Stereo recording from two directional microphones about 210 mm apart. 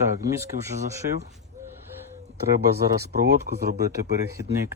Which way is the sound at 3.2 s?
50° right (ahead or behind).